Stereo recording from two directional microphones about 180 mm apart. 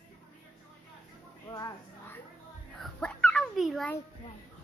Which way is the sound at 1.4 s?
20° left (ahead or behind).